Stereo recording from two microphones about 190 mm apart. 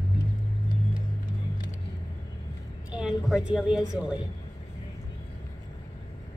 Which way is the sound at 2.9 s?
5° right (ahead or behind).